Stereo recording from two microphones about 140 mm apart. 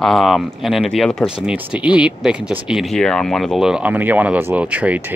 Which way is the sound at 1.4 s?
10° right (ahead or behind).